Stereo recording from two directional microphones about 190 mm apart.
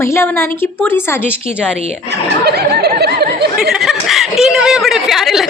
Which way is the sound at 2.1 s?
60° right (ahead or behind).